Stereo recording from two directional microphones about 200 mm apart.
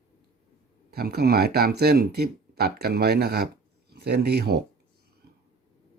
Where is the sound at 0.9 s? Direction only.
50° right (ahead or behind).